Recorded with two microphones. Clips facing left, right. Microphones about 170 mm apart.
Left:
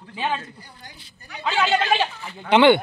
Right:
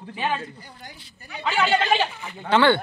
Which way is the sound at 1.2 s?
10° right (ahead or behind).